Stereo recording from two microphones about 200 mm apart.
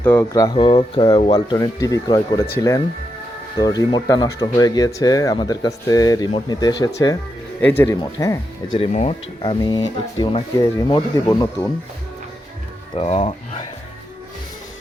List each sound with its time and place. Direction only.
0.0 s speech: 10° left (ahead or behind)
0.5 s speech: 25° left (ahead or behind)
8.8 s speech: 30° left (ahead or behind)
9.4 s speech: 20° left (ahead or behind)
13.0 s speech: 30° left (ahead or behind)